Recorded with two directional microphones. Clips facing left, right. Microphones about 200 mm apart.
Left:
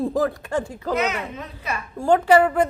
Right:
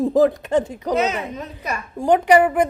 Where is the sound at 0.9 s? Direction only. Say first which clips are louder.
Right 4 dB; 35° right (ahead or behind).